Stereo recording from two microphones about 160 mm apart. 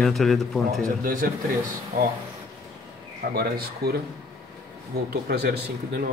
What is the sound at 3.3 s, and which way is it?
Speech, 75° right (ahead or behind).